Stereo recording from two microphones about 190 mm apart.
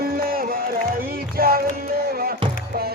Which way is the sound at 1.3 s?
50° right (ahead or behind).